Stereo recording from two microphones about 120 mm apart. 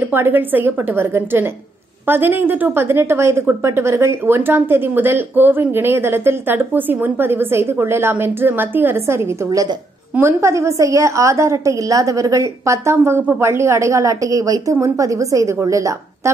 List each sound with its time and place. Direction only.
0.0 s a woman's voice: 15° right (ahead or behind)